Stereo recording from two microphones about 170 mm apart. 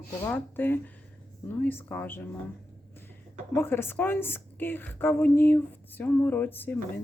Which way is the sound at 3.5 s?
15° left (ahead or behind).